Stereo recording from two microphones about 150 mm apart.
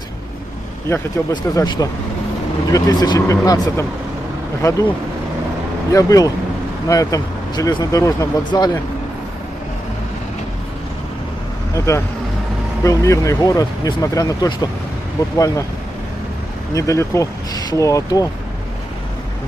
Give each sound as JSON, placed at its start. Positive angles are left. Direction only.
{"t": 1.3, "sound": "speech", "side_deg": 25}
{"t": 5.9, "sound": "speech", "side_deg": 25}
{"t": 11.7, "sound": "speech", "side_deg": 20}
{"t": 16.7, "sound": "speech", "side_deg": 20}